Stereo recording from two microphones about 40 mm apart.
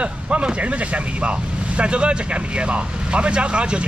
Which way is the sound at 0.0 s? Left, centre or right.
Right.